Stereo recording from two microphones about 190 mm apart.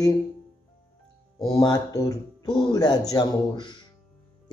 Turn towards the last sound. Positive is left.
turn(degrees=20)  # may be behind; listen again after turning